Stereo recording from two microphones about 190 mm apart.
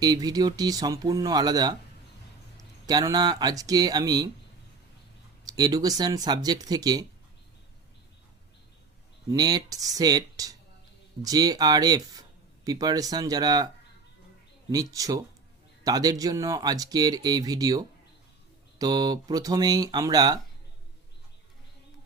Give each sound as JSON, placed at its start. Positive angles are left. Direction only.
{"t": 0.0, "sound": "speech", "side_deg": -20}
{"t": 5.5, "sound": "speech", "side_deg": -20}
{"t": 9.3, "sound": "speech", "side_deg": -20}
{"t": 14.7, "sound": "speech", "side_deg": -20}